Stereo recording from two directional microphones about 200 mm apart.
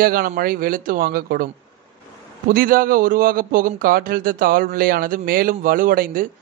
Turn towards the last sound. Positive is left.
turn(degrees=-45)  # may be behind; listen again after turning